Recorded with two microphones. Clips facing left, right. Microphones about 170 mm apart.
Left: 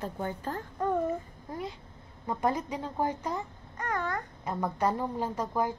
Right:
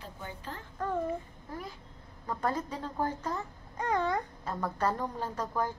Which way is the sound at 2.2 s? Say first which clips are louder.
Left 3 dB; 15° left (ahead or behind).